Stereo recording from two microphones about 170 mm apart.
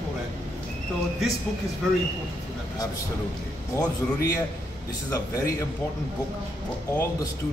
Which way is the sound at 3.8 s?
20° left (ahead or behind).